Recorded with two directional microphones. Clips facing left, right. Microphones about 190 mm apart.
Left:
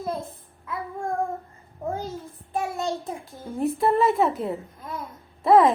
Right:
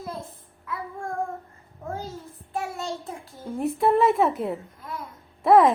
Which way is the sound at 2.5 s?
15° left (ahead or behind).